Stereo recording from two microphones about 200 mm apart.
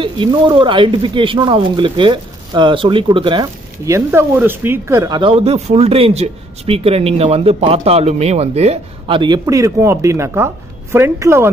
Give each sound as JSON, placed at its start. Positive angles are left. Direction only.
{"t": 0.0, "sound": "speech", "side_deg": -20}